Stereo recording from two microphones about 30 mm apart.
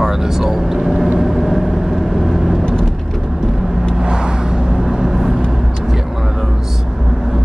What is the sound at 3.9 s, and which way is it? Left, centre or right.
Vehicle, right.